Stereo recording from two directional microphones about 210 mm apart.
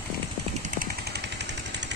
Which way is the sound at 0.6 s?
40° right (ahead or behind).